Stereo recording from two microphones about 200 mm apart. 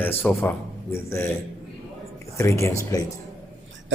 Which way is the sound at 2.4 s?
15° left (ahead or behind).